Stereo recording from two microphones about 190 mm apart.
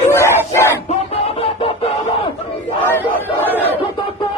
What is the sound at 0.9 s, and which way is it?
Music, 30° left (ahead or behind).